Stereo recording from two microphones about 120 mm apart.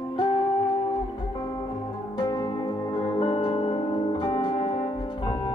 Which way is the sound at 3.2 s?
50° left (ahead or behind).